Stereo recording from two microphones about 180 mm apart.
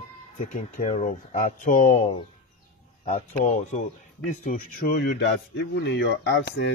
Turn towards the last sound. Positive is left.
turn(degrees=70)  # may be behind; listen again after turning